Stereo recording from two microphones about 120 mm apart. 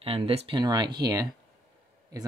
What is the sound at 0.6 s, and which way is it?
Speech, 35° right (ahead or behind).